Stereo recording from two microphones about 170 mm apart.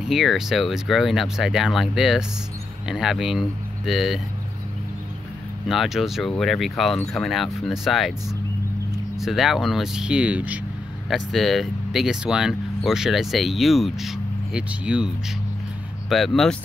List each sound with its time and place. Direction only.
0.0 s speech: centre (ahead or behind)
5.7 s speech: centre (ahead or behind)
9.2 s speech: centre (ahead or behind)
16.1 s speech: centre (ahead or behind)